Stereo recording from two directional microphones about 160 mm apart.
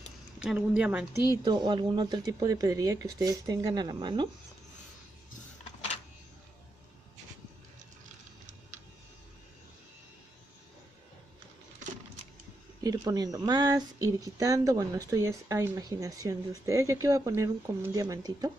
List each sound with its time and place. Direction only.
0.4 s a woman's voice: 5° right (ahead or behind)
1.3 s speech: 25° right (ahead or behind)
8.5 s a sound: 50° right (ahead or behind)
12.8 s speech: 20° right (ahead or behind)